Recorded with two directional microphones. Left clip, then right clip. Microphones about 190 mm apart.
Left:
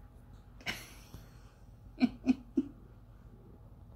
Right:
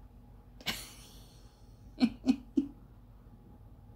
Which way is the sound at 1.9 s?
20° right (ahead or behind).